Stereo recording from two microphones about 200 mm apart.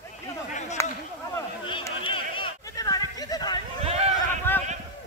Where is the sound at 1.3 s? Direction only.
25° left (ahead or behind).